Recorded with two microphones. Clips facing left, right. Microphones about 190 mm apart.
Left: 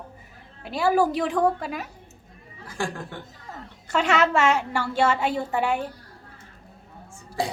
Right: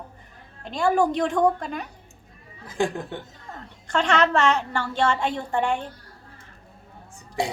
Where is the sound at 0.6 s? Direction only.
5° left (ahead or behind).